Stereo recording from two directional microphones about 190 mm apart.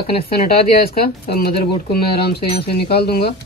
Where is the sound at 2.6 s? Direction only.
55° left (ahead or behind).